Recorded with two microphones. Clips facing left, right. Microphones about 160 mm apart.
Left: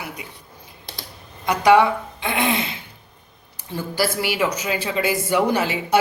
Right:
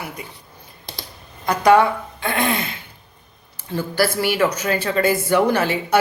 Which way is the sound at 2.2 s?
20° left (ahead or behind).